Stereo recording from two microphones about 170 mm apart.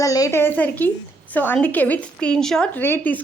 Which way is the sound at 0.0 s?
20° left (ahead or behind).